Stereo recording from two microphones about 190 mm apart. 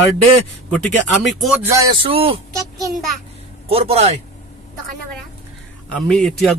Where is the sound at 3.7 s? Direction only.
30° right (ahead or behind).